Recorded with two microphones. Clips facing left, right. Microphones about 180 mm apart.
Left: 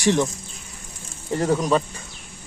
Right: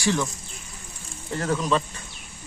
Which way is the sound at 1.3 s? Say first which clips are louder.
Left 5 dB; 15° left (ahead or behind).